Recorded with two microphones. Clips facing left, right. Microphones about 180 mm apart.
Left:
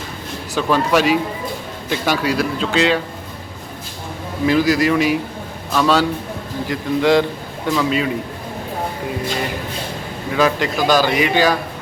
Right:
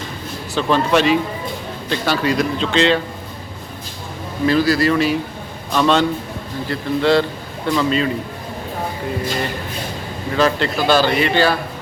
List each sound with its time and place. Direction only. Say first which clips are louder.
0.5 s a man's voice: even; 10° left (ahead or behind)
4.4 s a man's voice: even; 15° left (ahead or behind)
10.3 s a man's voice: even; 10° left (ahead or behind)